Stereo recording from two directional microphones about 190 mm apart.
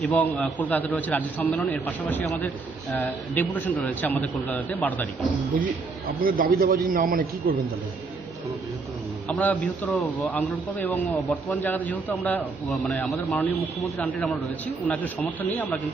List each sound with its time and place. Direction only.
0.0 s a man's voice: 10° left (ahead or behind)
5.5 s a man's voice: 45° right (ahead or behind)
9.2 s a man's voice: 10° left (ahead or behind)